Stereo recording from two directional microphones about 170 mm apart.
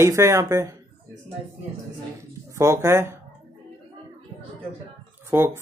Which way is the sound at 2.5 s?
15° right (ahead or behind).